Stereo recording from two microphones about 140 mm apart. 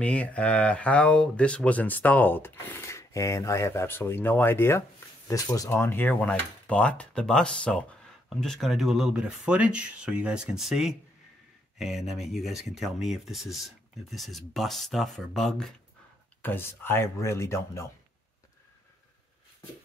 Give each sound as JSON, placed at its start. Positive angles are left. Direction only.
{"t": 0.0, "sound": "speech", "side_deg": 10}
{"t": 16.4, "sound": "speech", "side_deg": 15}